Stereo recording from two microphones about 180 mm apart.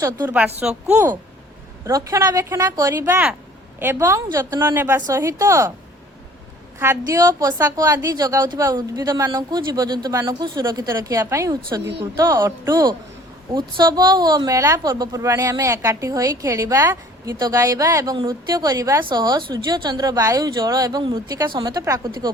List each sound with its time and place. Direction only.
0.0 s speech: 15° right (ahead or behind)
0.6 s speech: 5° right (ahead or behind)
1.9 s a woman's voice: 20° right (ahead or behind)
6.7 s a woman's voice: 15° right (ahead or behind)
11.8 s a woman's voice: 70° right (ahead or behind)
12.1 s a woman's voice: 20° right (ahead or behind)